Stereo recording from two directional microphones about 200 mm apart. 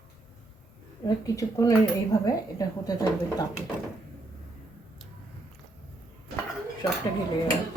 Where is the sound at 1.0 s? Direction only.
15° left (ahead or behind).